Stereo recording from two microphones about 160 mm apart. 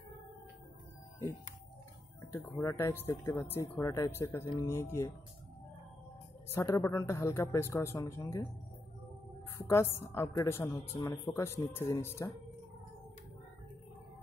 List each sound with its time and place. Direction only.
2.3 s speech: 15° left (ahead or behind)
6.5 s speech: 15° left (ahead or behind)
9.6 s speech: 15° left (ahead or behind)